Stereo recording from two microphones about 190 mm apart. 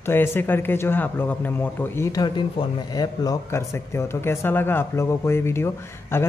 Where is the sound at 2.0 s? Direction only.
20° left (ahead or behind).